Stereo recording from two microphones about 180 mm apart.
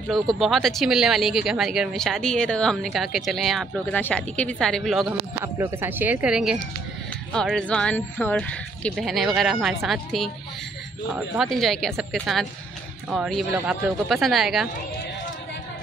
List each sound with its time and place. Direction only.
0.1 s speech: centre (ahead or behind)
5.4 s speech: 15° right (ahead or behind)